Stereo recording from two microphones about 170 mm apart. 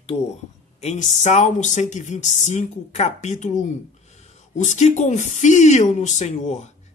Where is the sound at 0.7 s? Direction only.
45° left (ahead or behind).